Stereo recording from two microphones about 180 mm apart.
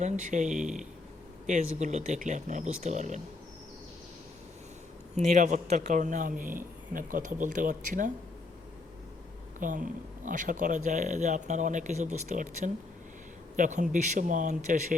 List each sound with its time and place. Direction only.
0.0 s speech: 45° right (ahead or behind)
5.1 s speech: 45° right (ahead or behind)
9.6 s speech: 45° right (ahead or behind)